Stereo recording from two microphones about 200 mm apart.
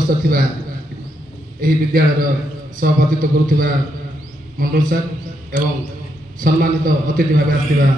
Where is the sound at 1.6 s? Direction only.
45° right (ahead or behind).